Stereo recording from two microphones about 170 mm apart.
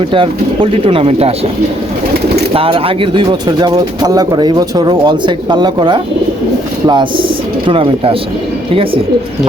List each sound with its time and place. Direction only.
0.1 s speech: 30° right (ahead or behind)
2.5 s speech: 35° right (ahead or behind)